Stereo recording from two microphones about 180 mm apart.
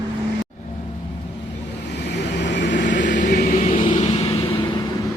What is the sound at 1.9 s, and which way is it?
Vehicle, 70° left (ahead or behind).